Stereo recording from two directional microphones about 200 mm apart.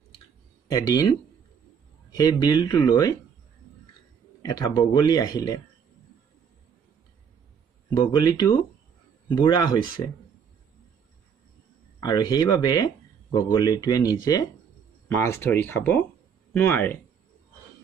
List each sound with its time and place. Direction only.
0.7 s speech: 20° left (ahead or behind)
2.1 s speech: 20° left (ahead or behind)
4.4 s speech: 20° left (ahead or behind)
7.9 s speech: 20° left (ahead or behind)
12.0 s speech: 20° left (ahead or behind)